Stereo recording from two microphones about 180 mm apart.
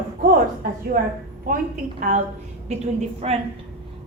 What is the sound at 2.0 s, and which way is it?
A woman's voice, 40° right (ahead or behind).